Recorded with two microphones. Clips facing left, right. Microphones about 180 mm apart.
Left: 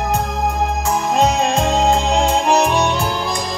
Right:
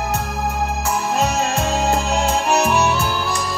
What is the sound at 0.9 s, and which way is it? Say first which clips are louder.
Music: left 4 dB; 35° left (ahead or behind).